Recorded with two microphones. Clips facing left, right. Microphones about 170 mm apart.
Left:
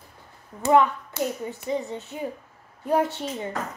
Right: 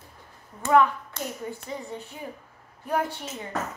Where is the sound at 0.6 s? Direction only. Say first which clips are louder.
Left 1 dB; 20° left (ahead or behind).